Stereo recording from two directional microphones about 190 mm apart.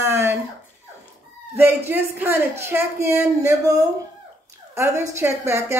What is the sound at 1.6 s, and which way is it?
Speech, 10° right (ahead or behind).